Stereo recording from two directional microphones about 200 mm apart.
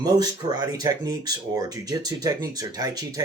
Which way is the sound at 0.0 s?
20° right (ahead or behind).